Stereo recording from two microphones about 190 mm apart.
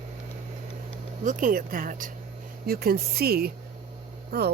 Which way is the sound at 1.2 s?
45° right (ahead or behind).